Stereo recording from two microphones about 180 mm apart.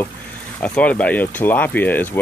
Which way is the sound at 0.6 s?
5° left (ahead or behind).